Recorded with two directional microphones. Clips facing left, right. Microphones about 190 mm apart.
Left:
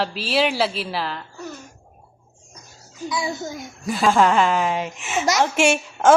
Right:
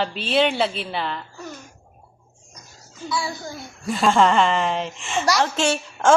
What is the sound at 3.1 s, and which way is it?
Speech, 20° left (ahead or behind).